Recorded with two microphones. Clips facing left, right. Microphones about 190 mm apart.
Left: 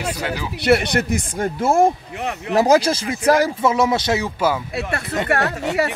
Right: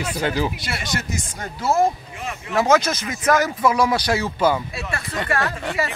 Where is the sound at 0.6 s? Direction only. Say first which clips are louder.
Left 12 dB; 60° left (ahead or behind).